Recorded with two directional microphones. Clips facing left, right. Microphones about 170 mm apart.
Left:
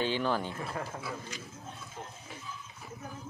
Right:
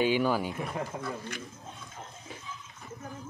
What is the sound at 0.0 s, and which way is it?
Speech, 10° right (ahead or behind).